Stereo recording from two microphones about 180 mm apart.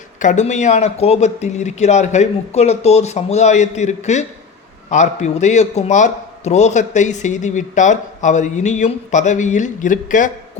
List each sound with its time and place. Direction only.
0.2 s a man's voice: 40° left (ahead or behind)